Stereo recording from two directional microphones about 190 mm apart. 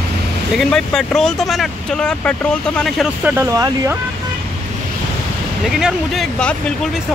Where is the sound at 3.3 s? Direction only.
15° right (ahead or behind).